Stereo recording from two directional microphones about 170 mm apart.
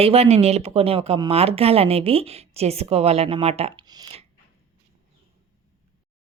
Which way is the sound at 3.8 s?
25° right (ahead or behind).